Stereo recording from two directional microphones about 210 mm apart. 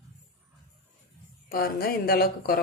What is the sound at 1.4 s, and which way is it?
A woman's voice, 45° left (ahead or behind).